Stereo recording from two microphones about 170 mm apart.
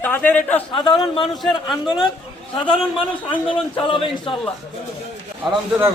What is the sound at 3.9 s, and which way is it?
Speech, 30° left (ahead or behind).